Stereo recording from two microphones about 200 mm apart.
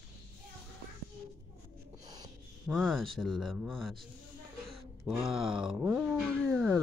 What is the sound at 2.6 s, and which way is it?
A child's voice, centre (ahead or behind).